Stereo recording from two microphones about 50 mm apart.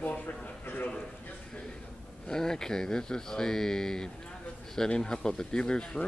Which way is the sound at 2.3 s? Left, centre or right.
Centre.